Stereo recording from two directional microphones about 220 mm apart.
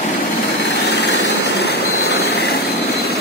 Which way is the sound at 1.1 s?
50° left (ahead or behind).